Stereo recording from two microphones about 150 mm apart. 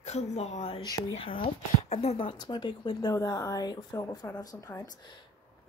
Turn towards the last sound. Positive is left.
turn(degrees=20)  # may be behind; listen again after turning